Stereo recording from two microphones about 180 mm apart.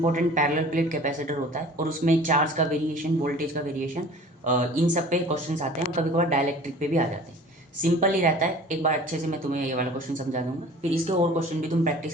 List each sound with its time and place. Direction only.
0.0 s a man's voice: 45° right (ahead or behind)
11.0 s speech: 35° right (ahead or behind)